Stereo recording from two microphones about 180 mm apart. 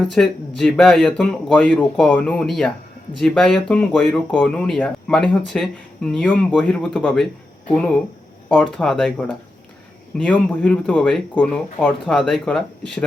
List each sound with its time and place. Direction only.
0.0 s speech: centre (ahead or behind)